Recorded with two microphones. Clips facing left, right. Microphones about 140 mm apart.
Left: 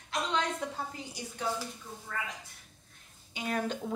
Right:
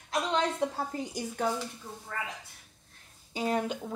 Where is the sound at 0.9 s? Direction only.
45° right (ahead or behind).